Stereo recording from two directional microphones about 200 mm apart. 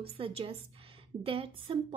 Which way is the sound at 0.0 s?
30° right (ahead or behind).